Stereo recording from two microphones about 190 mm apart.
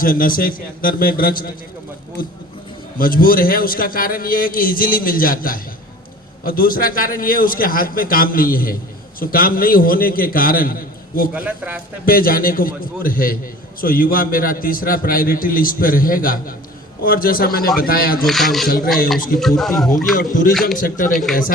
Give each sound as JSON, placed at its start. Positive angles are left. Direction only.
{"t": 0.0, "sound": "a man's voice", "side_deg": 45}
{"t": 11.3, "sound": "a man's voice", "side_deg": -10}
{"t": 12.0, "sound": "a man's voice", "side_deg": 50}
{"t": 18.3, "sound": "speech", "side_deg": 0}
{"t": 20.1, "sound": "a man's voice", "side_deg": 45}
{"t": 20.5, "sound": "speech", "side_deg": 0}
{"t": 20.7, "sound": "a man's voice", "side_deg": 45}